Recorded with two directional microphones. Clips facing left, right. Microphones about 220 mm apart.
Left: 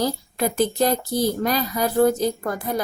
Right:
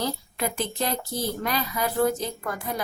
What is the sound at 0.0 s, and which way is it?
Speech, 40° left (ahead or behind).